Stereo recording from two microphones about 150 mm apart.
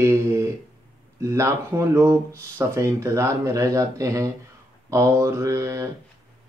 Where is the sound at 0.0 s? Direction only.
20° right (ahead or behind).